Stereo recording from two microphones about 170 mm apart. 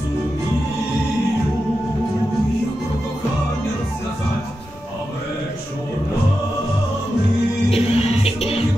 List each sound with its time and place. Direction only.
7.7 s music: 35° left (ahead or behind)